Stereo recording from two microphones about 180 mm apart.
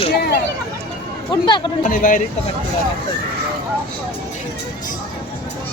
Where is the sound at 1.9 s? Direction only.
50° left (ahead or behind).